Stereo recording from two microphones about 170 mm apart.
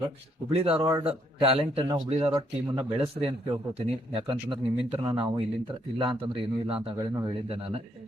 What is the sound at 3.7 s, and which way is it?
Speech, 30° right (ahead or behind).